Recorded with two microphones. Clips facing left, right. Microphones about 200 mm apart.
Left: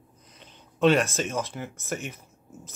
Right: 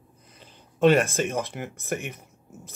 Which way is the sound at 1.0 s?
55° right (ahead or behind).